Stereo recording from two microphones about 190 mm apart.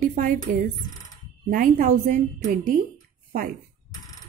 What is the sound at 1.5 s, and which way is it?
A woman's voice, 45° right (ahead or behind).